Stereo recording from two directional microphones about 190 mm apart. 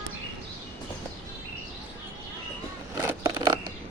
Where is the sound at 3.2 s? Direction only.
25° right (ahead or behind).